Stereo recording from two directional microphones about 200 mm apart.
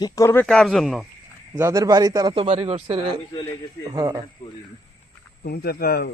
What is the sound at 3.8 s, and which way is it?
Speech, 20° right (ahead or behind).